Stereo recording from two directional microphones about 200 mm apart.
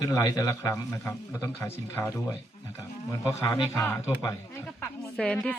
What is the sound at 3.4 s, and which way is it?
Speech, 15° left (ahead or behind).